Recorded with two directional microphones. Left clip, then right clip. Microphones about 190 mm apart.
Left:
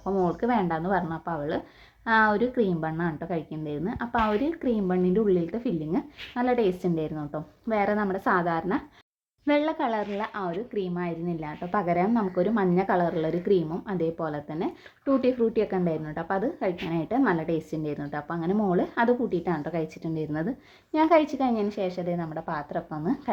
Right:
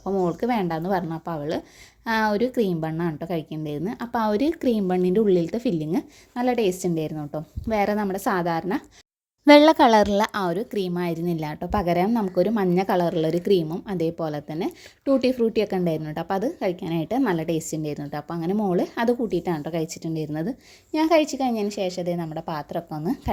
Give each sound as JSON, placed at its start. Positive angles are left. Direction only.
{"t": 0.0, "sound": "a woman's voice", "side_deg": -35}
{"t": 9.5, "sound": "a woman's voice", "side_deg": -70}